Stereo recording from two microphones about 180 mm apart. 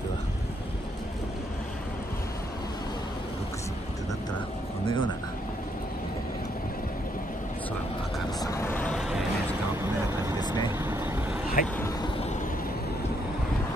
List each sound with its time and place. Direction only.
4.8 s speech: 30° left (ahead or behind)
8.4 s vehicle: 15° left (ahead or behind)
10.4 s vehicle: 25° left (ahead or behind)
10.8 s vehicle: 10° right (ahead or behind)
11.6 s vehicle: 50° left (ahead or behind)